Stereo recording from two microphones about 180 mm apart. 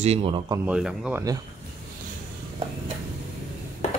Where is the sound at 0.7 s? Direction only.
5° right (ahead or behind).